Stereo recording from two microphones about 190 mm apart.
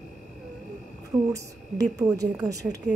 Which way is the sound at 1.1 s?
25° right (ahead or behind).